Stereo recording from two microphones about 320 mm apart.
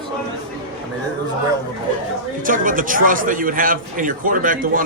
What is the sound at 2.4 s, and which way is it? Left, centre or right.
A man's voice, right.